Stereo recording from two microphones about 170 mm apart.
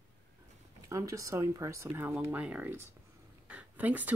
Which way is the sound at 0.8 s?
20° right (ahead or behind).